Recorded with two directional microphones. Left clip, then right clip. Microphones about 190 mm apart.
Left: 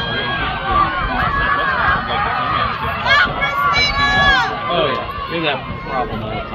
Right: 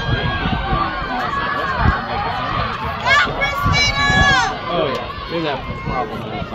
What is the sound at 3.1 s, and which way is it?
Run, 45° left (ahead or behind).